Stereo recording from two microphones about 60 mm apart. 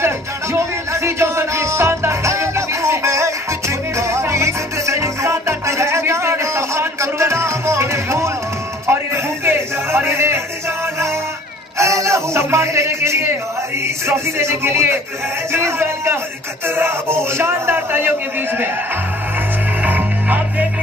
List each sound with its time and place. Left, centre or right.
1.0 s music: right
11.8 s speech: right
13.8 s music: right
16.6 s speech: right
19.8 s music: right